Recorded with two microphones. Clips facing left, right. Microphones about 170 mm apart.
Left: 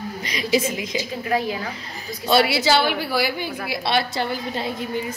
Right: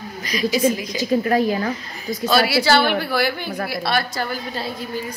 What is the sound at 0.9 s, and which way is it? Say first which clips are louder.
A woman's voice: right 5 dB; 45° right (ahead or behind).